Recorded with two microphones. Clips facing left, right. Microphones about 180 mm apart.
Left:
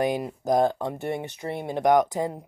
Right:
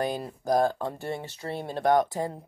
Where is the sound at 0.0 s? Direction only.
20° left (ahead or behind).